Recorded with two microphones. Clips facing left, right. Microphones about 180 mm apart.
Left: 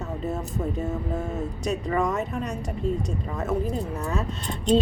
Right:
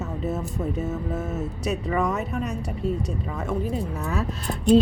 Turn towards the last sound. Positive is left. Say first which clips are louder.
# right 3 dB
turn(degrees=-5)  # may be behind; listen again after turning